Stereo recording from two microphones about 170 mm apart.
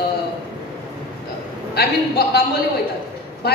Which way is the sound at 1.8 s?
65° left (ahead or behind).